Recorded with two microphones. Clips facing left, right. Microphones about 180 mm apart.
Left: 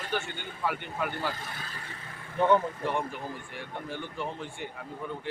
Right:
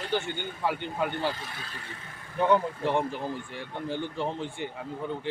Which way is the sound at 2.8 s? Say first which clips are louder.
Right 4 dB; 25° right (ahead or behind).